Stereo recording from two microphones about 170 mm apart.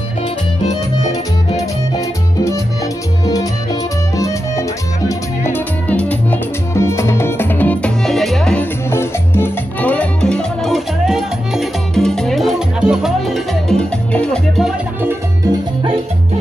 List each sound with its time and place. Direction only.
2.0 s music: 20° left (ahead or behind)
4.2 s music: 20° left (ahead or behind); by 8.6 s centre (ahead or behind)
8.9 s salsa music: 15° left (ahead or behind)
15.0 s music: 20° right (ahead or behind)